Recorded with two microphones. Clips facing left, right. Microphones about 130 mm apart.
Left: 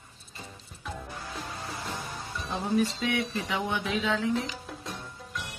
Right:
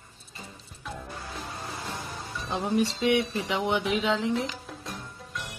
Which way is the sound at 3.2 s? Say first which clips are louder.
Right 2 dB; centre (ahead or behind).